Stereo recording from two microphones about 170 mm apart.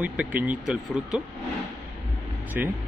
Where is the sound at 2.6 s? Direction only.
10° right (ahead or behind).